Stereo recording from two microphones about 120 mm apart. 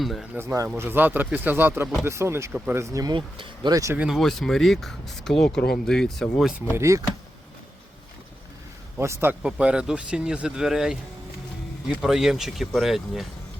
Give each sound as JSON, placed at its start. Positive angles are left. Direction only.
{"t": 0.0, "sound": "speech", "side_deg": 0}
{"t": 0.3, "sound": "speech", "side_deg": -25}
{"t": 3.2, "sound": "speech", "side_deg": -40}
{"t": 3.9, "sound": "speech", "side_deg": -10}
{"t": 4.2, "sound": "speech", "side_deg": 0}
{"t": 6.7, "sound": "speech", "side_deg": -25}
{"t": 9.0, "sound": "speech", "side_deg": -20}
{"t": 9.4, "sound": "speech", "side_deg": -10}